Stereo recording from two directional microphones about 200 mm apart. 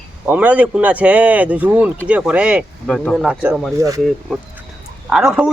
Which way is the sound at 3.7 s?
15° right (ahead or behind).